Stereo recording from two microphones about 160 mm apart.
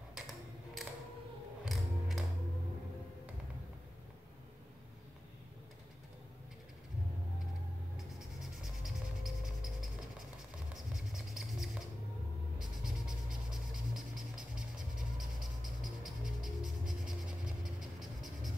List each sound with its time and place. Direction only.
0.1 s a sound: centre (ahead or behind)
1.6 s music: centre (ahead or behind)
8.0 s music: centre (ahead or behind)
10.7 s mouse: centre (ahead or behind)
12.5 s a sound: 5° right (ahead or behind)
17.6 s writing: centre (ahead or behind)